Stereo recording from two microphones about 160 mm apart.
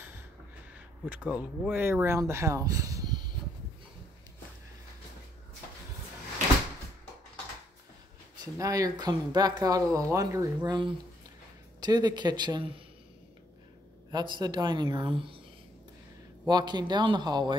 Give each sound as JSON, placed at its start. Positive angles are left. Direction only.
{"t": 1.0, "sound": "speech", "side_deg": -10}
{"t": 8.5, "sound": "speech", "side_deg": -20}
{"t": 14.1, "sound": "speech", "side_deg": -30}
{"t": 16.4, "sound": "speech", "side_deg": -25}